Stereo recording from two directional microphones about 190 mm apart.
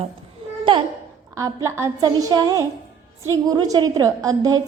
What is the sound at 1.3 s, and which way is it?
A woman's voice, 15° right (ahead or behind).